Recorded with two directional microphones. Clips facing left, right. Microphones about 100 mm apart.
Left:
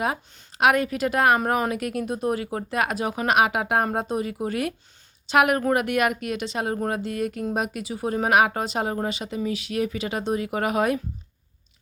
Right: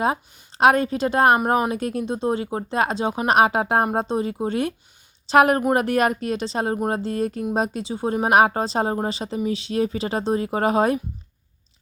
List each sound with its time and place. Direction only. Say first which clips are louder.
0.0 s a woman's voice: right 4 dB; 30° right (ahead or behind)